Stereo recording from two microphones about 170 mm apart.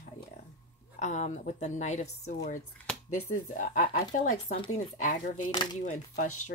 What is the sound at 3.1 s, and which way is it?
Speech, 50° left (ahead or behind).